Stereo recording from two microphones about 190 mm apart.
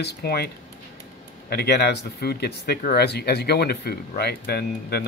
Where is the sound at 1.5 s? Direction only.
55° left (ahead or behind).